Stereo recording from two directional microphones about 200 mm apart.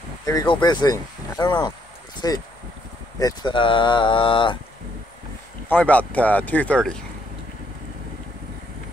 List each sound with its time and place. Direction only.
0.2 s speech: 20° left (ahead or behind)
5.7 s speech: 10° left (ahead or behind)